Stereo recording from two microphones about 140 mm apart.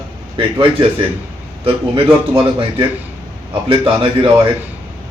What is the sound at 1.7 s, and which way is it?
A man's voice, 40° right (ahead or behind).